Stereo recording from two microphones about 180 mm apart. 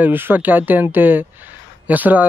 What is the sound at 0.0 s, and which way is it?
Speech, 10° right (ahead or behind).